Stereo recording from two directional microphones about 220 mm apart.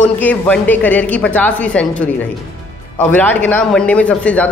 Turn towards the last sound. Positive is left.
turn(degrees=5)  # may be behind; listen again after turning